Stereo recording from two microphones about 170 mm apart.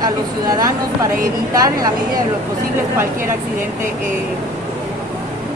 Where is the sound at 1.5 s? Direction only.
20° right (ahead or behind).